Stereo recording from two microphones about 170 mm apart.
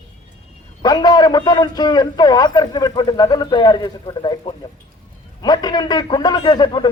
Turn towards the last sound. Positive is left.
turn(degrees=25)  # may be behind; listen again after turning